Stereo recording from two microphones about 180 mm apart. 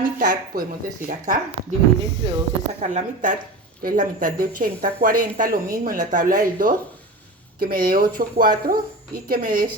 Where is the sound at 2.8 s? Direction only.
45° right (ahead or behind).